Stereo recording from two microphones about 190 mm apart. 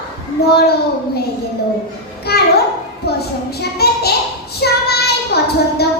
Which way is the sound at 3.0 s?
55° left (ahead or behind).